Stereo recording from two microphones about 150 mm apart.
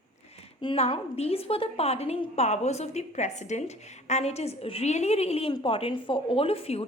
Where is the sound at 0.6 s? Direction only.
40° left (ahead or behind).